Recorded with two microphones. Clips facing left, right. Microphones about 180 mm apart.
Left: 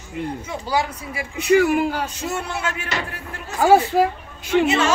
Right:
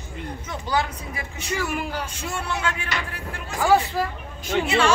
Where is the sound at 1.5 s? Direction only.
60° left (ahead or behind).